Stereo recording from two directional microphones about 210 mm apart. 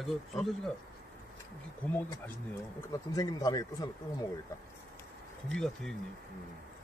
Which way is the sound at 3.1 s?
20° left (ahead or behind).